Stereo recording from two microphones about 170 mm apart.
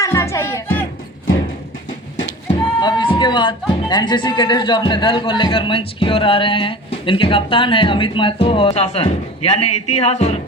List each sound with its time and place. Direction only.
0.0 s music: 15° left (ahead or behind)
2.8 s speech: 30° left (ahead or behind)